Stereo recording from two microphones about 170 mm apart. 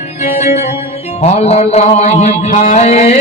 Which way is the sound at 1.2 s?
40° left (ahead or behind).